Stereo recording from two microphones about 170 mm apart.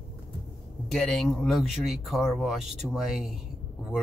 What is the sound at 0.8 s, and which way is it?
Speech, centre (ahead or behind).